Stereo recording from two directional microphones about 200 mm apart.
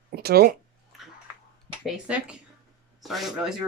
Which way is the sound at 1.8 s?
5° right (ahead or behind).